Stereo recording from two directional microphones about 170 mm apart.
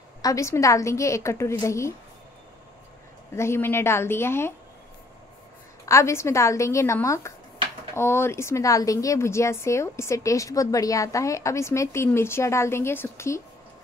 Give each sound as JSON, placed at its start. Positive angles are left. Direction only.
{"t": 0.2, "sound": "speech", "side_deg": 20}
{"t": 3.3, "sound": "speech", "side_deg": 15}
{"t": 5.9, "sound": "speech", "side_deg": 15}